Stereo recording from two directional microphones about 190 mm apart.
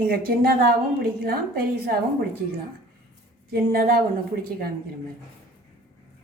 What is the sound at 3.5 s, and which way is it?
Speech, 50° right (ahead or behind).